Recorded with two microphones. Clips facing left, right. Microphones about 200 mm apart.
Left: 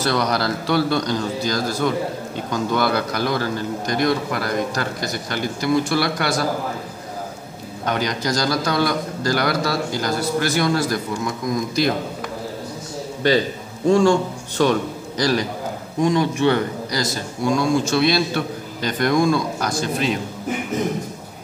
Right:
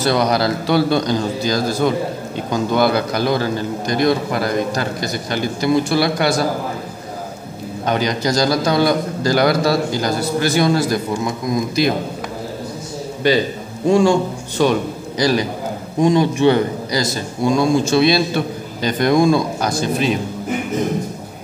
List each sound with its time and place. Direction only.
0.1 s a man's voice: 20° right (ahead or behind)
7.8 s a man's voice: 25° right (ahead or behind)
13.8 s a man's voice: 15° right (ahead or behind)